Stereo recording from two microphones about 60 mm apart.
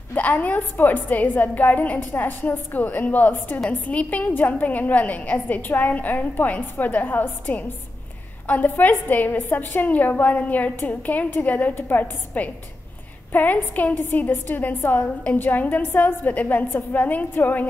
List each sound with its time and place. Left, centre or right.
0.1 s a woman's voice: left